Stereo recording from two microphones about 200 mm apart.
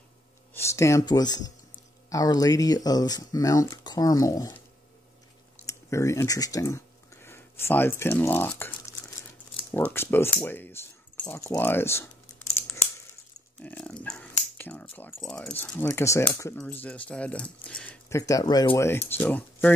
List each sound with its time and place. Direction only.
0.6 s speech: 15° left (ahead or behind)
5.7 s speech: 15° left (ahead or behind)
9.9 s speech: 10° left (ahead or behind)
13.6 s speech: 5° left (ahead or behind)
18.2 s speech: 20° left (ahead or behind)